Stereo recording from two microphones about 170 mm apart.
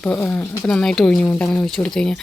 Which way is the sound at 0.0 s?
10° left (ahead or behind).